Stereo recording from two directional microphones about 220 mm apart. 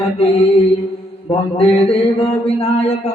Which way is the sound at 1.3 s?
25° left (ahead or behind).